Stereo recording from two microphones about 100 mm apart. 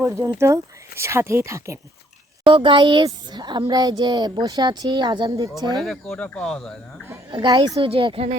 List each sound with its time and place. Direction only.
0.0 s speech: 30° right (ahead or behind)
2.4 s speech: 60° right (ahead or behind)
5.8 s speech: 5° left (ahead or behind)
7.3 s a woman's voice: 40° right (ahead or behind)
7.8 s speech: 60° right (ahead or behind)